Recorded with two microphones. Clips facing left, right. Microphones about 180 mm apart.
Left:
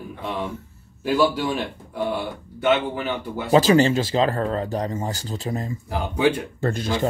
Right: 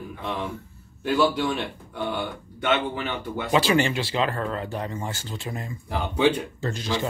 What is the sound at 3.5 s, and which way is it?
Speech, 40° left (ahead or behind).